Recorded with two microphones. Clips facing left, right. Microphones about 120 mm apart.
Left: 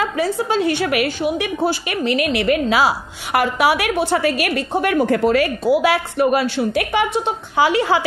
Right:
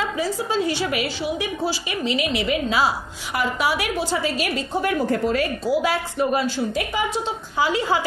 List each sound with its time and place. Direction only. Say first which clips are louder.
0.2 s a woman's voice: left 5 dB; 65° left (ahead or behind)